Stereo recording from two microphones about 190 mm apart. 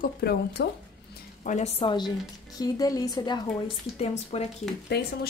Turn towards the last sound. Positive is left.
turn(degrees=60)  # may be behind; listen again after turning